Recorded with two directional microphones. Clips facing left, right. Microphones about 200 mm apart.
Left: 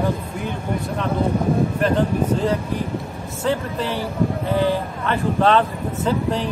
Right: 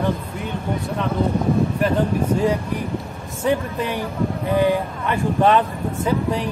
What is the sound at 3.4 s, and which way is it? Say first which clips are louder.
Speech: right 1 dB; 15° right (ahead or behind).